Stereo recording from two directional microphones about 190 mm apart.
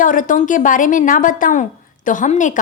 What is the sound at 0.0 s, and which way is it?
A woman's voice, 45° left (ahead or behind).